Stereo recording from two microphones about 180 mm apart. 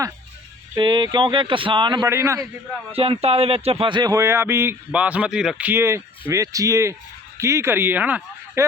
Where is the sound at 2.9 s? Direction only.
35° right (ahead or behind).